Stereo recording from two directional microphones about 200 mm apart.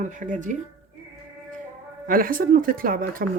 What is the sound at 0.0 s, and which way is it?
Speech, 40° right (ahead or behind).